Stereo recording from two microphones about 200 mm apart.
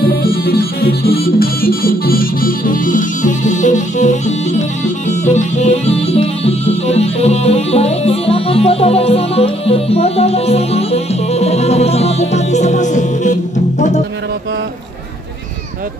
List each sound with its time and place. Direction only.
0.2 s music: 50° left (ahead or behind)